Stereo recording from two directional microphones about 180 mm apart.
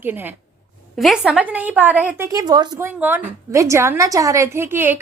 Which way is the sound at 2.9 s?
10° right (ahead or behind).